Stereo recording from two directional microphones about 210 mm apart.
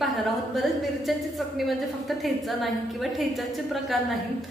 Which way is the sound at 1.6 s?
Centre (ahead or behind).